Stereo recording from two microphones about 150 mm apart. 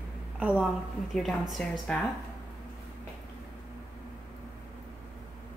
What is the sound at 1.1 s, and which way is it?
Speech, centre (ahead or behind).